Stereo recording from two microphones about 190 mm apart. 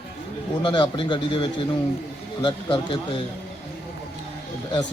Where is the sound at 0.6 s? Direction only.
25° left (ahead or behind).